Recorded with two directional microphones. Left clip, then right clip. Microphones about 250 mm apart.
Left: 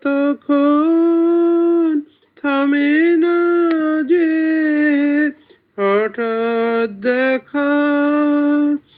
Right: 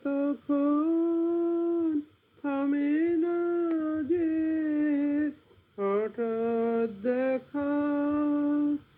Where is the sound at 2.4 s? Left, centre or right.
Left.